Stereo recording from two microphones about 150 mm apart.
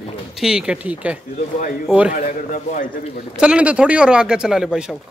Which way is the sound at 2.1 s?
60° left (ahead or behind).